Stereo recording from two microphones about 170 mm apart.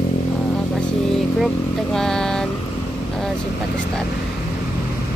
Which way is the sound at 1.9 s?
5° left (ahead or behind).